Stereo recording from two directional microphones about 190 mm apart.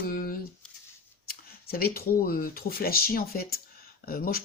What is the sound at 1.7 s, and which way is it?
Speech, 55° left (ahead or behind).